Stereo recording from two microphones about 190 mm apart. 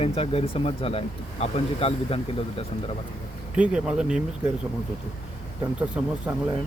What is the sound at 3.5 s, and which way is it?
Speech, 5° right (ahead or behind).